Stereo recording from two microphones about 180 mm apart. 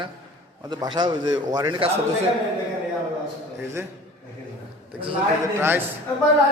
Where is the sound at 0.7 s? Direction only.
25° right (ahead or behind).